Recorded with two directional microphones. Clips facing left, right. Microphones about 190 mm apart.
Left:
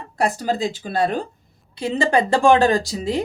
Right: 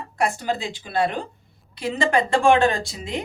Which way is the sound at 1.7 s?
30° left (ahead or behind).